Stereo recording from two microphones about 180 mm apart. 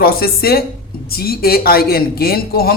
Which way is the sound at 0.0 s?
55° left (ahead or behind).